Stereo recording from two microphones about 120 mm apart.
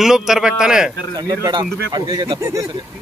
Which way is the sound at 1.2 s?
35° right (ahead or behind).